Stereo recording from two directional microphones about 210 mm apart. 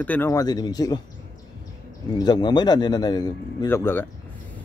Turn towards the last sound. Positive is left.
turn(degrees=10)  # may be behind; listen again after turning